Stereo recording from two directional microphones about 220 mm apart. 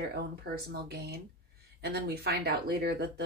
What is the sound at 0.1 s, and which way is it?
Speech, 45° right (ahead or behind).